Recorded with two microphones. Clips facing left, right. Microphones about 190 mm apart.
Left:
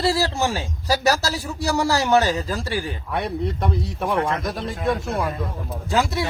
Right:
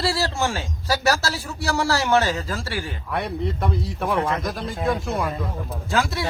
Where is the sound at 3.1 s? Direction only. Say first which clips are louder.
Left 1 dB; centre (ahead or behind).